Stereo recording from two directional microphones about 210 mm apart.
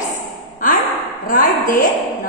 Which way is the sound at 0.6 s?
40° left (ahead or behind).